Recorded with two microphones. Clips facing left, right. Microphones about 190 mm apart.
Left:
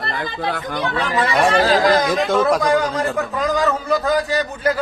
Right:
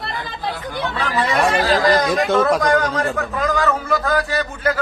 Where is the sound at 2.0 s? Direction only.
Centre (ahead or behind).